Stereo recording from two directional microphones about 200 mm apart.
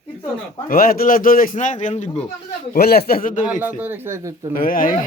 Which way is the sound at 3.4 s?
10° right (ahead or behind).